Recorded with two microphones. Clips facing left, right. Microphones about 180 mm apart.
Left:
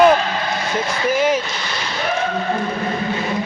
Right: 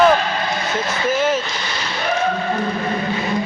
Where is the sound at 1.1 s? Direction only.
10° left (ahead or behind).